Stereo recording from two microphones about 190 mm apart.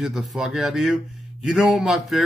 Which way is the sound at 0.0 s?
Centre (ahead or behind).